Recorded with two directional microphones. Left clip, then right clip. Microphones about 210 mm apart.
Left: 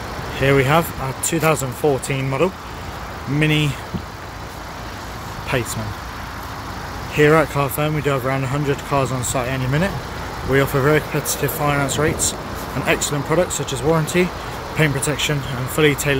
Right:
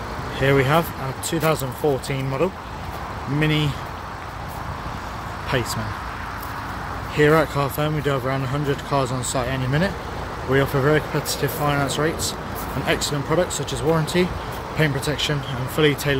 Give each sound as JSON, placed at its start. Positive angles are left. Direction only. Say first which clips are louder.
{"t": 0.4, "sound": "speech", "louder": "left 3 dB", "side_deg": 5}
{"t": 5.5, "sound": "speech", "louder": "left 2 dB", "side_deg": 5}
{"t": 7.2, "sound": "speech", "louder": "left 3 dB", "side_deg": 10}